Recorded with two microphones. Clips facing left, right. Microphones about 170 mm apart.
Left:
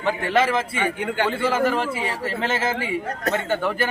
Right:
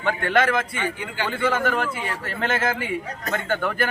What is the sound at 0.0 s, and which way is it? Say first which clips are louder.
Speech: left 1 dB; 5° left (ahead or behind).